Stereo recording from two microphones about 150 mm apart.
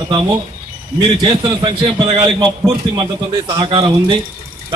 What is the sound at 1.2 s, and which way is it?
A man's voice, 30° right (ahead or behind).